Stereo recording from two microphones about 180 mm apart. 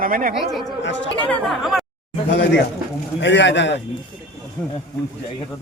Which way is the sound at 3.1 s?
80° left.